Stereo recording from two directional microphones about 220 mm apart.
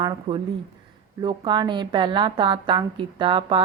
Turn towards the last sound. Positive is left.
turn(degrees=-25)  # may be behind; listen again after turning